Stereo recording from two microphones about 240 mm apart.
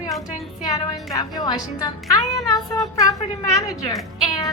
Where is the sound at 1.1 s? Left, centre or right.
Centre.